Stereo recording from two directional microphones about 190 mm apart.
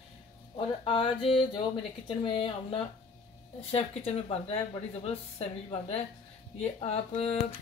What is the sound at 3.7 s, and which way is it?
Speech, 30° left (ahead or behind).